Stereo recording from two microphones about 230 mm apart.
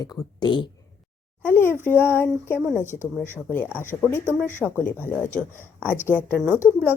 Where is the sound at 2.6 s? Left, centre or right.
Centre.